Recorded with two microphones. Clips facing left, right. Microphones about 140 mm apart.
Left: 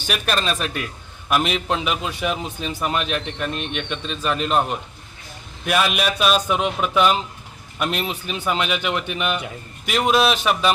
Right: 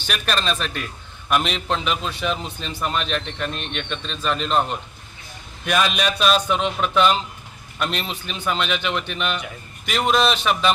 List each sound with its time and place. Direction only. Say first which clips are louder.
0.0 s a man's voice: left 1 dB; 5° left (ahead or behind)